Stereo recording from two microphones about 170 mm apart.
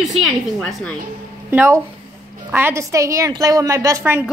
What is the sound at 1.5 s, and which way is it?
A woman's voice, 15° right (ahead or behind).